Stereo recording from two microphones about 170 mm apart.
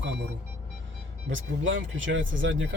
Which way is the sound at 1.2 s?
90° right.